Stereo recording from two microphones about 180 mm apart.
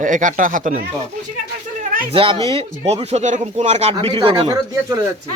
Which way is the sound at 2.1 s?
30° right (ahead or behind).